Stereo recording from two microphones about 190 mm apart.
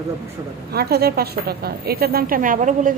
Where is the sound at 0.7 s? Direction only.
55° right (ahead or behind).